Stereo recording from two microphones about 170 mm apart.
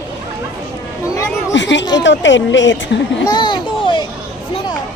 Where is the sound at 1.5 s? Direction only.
90° left.